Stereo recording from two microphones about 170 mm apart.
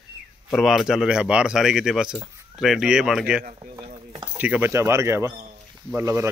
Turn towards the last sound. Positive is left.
turn(degrees=-15)  # may be behind; listen again after turning